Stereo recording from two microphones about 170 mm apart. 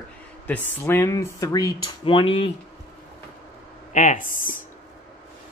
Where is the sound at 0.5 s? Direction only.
15° left (ahead or behind); by 2.5 s 30° left (ahead or behind).